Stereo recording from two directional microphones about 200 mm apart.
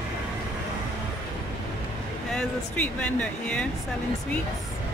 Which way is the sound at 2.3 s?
5° left (ahead or behind).